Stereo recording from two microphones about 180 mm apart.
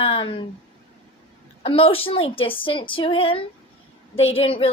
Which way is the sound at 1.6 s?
30° left (ahead or behind).